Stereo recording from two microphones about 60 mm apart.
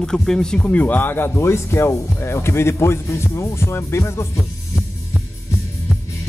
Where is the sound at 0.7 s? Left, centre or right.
Left.